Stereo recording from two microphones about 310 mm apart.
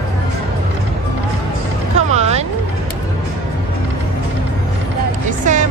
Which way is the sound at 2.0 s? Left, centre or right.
Right.